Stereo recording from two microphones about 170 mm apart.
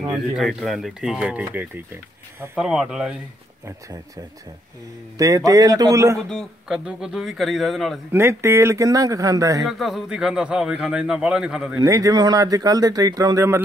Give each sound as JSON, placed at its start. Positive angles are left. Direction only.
{"t": 0.1, "sound": "a man's voice", "side_deg": -5}
{"t": 5.1, "sound": "speech", "side_deg": -20}
{"t": 6.2, "sound": "a man's voice", "side_deg": 0}
{"t": 8.1, "sound": "speech", "side_deg": -15}
{"t": 9.7, "sound": "a man's voice", "side_deg": 0}
{"t": 11.8, "sound": "speech", "side_deg": -20}